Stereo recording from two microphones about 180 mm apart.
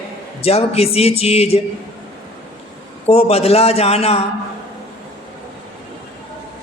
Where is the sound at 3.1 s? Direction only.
35° left (ahead or behind).